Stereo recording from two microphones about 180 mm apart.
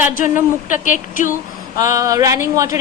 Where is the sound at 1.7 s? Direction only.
20° right (ahead or behind).